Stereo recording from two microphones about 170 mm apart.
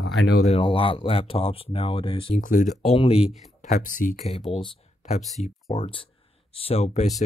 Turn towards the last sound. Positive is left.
turn(degrees=40)  # may be behind; listen again after turning